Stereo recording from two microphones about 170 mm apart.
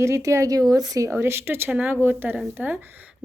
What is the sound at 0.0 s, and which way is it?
A woman's voice, 15° right (ahead or behind).